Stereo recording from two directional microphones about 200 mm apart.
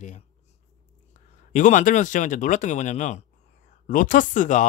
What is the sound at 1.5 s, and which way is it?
Speech, 40° left (ahead or behind).